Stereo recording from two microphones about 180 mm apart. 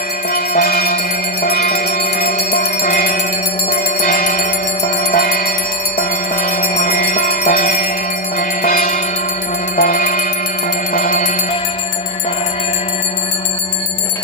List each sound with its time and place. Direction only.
0.3 s music: 60° left (ahead or behind)